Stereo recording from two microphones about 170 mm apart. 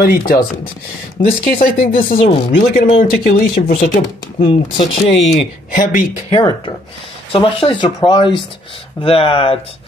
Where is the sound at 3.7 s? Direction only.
45° left (ahead or behind).